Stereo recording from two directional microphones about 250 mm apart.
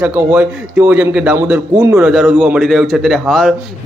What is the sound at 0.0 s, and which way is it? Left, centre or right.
A man's voice, centre.